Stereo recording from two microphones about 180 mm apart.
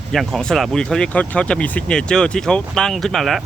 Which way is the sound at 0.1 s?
Centre (ahead or behind).